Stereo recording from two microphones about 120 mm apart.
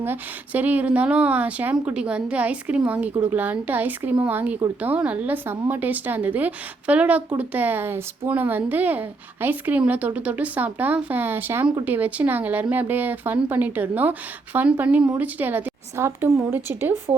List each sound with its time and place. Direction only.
0.0 s a woman's voice: 15° right (ahead or behind)